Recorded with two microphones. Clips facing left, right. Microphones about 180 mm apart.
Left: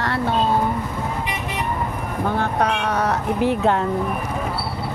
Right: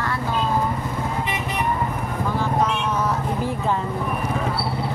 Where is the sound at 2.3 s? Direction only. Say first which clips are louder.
Even; 65° left (ahead or behind).